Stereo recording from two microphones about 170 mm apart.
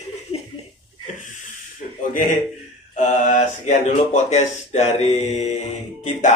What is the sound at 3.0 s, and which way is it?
Speech, 45° left (ahead or behind).